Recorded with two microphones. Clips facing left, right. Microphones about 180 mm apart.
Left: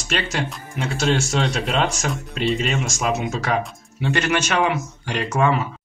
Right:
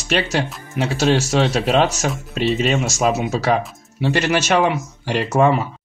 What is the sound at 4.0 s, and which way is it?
Speech, 35° right (ahead or behind).